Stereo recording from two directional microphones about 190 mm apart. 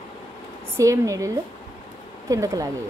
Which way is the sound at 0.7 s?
15° right (ahead or behind).